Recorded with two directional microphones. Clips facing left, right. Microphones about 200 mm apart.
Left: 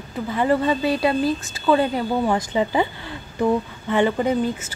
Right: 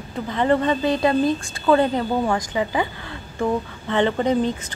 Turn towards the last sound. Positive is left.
turn(degrees=5)  # may be behind; listen again after turning